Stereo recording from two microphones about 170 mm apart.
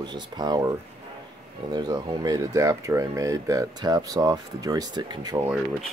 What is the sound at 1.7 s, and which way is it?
Speech, 25° right (ahead or behind).